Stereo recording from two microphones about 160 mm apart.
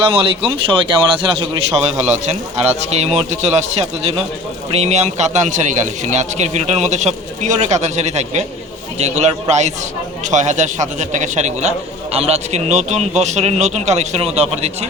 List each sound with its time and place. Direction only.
0.0 s speech: 35° right (ahead or behind)
1.9 s speech: 45° right (ahead or behind)